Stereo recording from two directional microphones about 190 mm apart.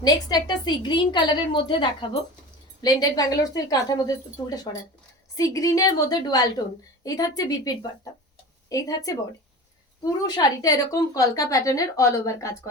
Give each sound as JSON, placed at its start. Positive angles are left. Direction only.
{"t": 0.0, "sound": "a woman's voice", "side_deg": 20}